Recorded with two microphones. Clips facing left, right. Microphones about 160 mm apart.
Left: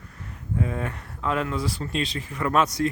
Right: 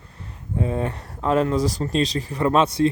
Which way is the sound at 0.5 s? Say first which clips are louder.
Right 4 dB; 30° right (ahead or behind).